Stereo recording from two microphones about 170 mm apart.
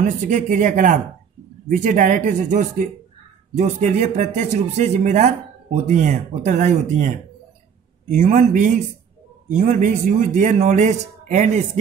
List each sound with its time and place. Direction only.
0.0 s a man's voice: 50° right (ahead or behind)